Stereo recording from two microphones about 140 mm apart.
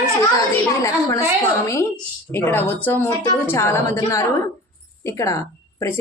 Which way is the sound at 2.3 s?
15° left (ahead or behind).